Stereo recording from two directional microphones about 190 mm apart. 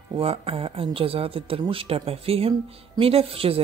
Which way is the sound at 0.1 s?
30° right (ahead or behind).